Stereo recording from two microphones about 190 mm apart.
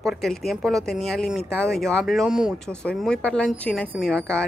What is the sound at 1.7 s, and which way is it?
Speech, centre (ahead or behind).